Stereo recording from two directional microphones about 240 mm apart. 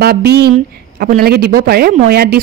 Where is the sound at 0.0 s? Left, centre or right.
Right.